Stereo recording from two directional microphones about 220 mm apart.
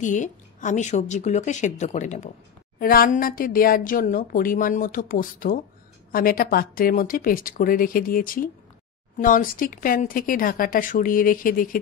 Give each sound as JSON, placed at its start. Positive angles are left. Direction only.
{"t": 0.0, "sound": "a woman's voice", "side_deg": 35}